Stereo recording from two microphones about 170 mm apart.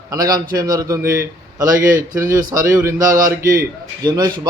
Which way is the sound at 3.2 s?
15° right (ahead or behind).